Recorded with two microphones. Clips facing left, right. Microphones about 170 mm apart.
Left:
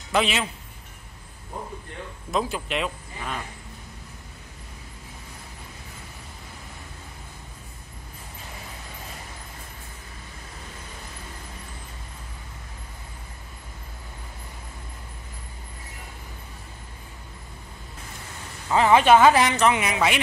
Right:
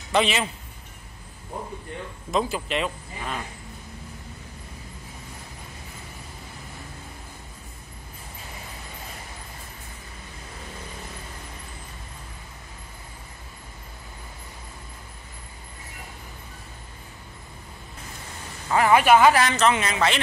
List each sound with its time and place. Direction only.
0.1 s speech: centre (ahead or behind)
2.3 s speech: centre (ahead or behind)
18.7 s a woman's voice: 20° left (ahead or behind)